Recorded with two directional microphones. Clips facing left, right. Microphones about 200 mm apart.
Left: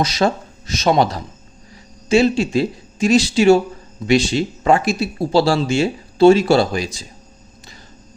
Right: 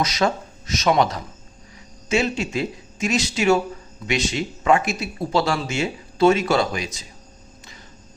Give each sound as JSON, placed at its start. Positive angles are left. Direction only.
{"t": 0.0, "sound": "speech", "side_deg": 30}